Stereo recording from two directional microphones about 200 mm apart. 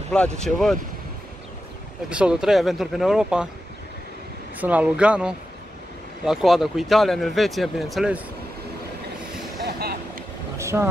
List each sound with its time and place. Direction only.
0.1 s speech: 5° left (ahead or behind)
2.0 s speech: 5° right (ahead or behind)
4.6 s speech: 5° right (ahead or behind)
9.8 s boat: 50° right (ahead or behind)
10.6 s vehicle: 15° right (ahead or behind)